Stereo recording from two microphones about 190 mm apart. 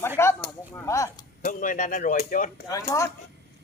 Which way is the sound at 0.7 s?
15° left (ahead or behind).